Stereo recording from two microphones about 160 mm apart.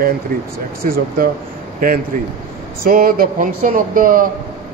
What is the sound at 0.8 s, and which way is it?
Speech, 65° right (ahead or behind).